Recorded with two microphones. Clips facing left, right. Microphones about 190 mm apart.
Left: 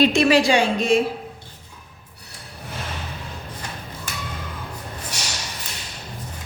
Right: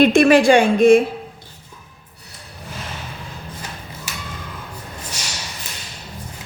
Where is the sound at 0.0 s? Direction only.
55° right (ahead or behind).